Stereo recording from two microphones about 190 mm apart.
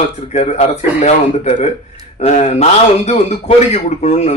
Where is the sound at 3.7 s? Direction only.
35° left (ahead or behind).